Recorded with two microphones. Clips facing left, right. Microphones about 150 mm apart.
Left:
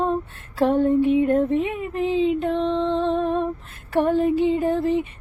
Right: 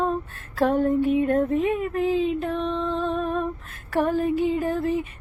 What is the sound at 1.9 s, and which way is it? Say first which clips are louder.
Music: left 6 dB; 25° left (ahead or behind).